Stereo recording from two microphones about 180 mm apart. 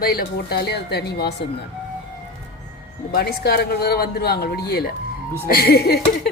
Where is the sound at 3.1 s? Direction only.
60° left (ahead or behind).